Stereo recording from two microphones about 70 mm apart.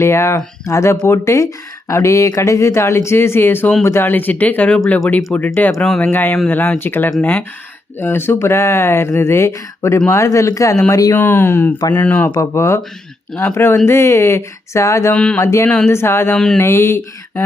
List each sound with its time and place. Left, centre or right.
0.0 s speech: left; by 5.5 s centre
6.0 s speech: left
11.2 s speech: left
12.4 s speech: left
15.1 s speech: centre
15.4 s speech: left
15.9 s speech: left
16.3 s speech: centre
16.6 s speech: left